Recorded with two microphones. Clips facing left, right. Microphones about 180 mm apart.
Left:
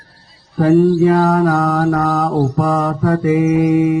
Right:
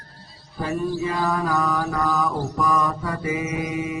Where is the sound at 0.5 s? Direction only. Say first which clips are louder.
Left 14 dB; 60° left (ahead or behind).